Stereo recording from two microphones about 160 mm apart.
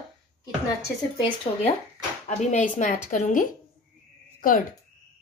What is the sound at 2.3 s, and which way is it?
A woman's voice, 45° left (ahead or behind).